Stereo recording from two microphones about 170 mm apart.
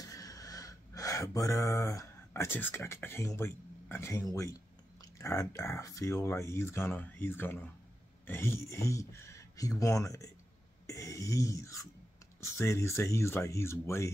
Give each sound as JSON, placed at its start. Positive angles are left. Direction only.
{"t": 0.1, "sound": "speech", "side_deg": 20}